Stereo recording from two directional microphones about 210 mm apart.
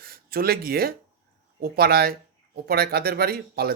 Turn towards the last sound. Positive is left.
turn(degrees=-45)  # may be behind; listen again after turning